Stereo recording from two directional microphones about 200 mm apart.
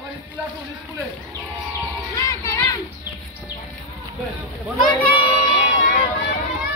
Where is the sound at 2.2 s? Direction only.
15° left (ahead or behind).